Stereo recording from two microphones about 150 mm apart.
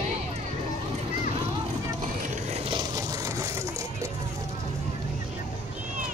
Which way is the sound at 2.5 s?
35° right (ahead or behind).